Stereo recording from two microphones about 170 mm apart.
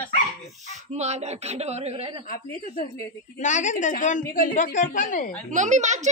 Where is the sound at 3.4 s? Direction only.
45° left (ahead or behind).